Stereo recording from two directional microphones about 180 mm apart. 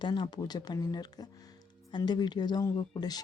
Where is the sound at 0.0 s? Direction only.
25° left (ahead or behind).